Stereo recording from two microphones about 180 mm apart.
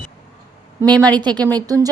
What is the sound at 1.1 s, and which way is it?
Speech, 25° right (ahead or behind).